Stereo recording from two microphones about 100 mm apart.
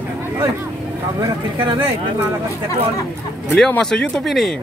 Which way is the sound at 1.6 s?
60° right (ahead or behind).